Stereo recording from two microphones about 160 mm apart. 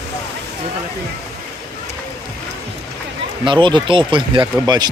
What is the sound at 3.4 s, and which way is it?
Speech, 30° right (ahead or behind).